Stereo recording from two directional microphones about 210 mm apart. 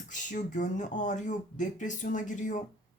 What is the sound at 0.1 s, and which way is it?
Speech, 35° left (ahead or behind).